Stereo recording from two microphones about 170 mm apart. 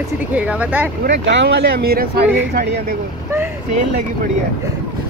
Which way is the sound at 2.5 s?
75° right (ahead or behind).